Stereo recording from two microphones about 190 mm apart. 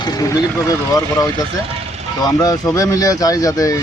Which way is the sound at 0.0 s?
20° left (ahead or behind).